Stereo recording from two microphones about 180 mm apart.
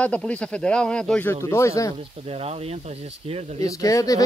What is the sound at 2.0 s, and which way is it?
Speech, 35° right (ahead or behind).